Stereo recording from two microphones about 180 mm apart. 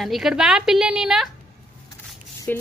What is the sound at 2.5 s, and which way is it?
Speech, 10° left (ahead or behind).